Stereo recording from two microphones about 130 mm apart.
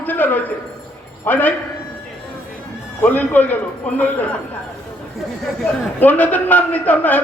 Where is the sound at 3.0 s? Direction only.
15° left (ahead or behind).